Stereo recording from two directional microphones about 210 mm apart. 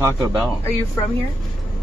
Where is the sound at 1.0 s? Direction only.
15° left (ahead or behind).